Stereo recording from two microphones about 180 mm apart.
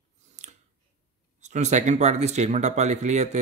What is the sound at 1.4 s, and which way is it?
Speech, 40° right (ahead or behind).